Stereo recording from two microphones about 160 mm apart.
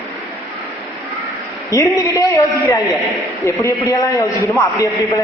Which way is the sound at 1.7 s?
20° left (ahead or behind).